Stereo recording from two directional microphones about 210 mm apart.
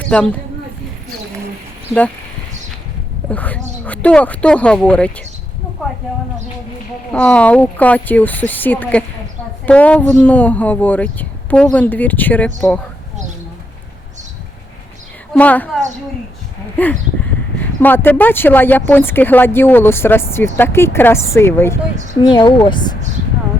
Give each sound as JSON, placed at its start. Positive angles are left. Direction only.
{"t": 0.0, "sound": "speech", "side_deg": 5}
{"t": 3.3, "sound": "a woman's voice", "side_deg": 5}
{"t": 7.1, "sound": "speech", "side_deg": 5}
{"t": 15.4, "sound": "speech", "side_deg": 5}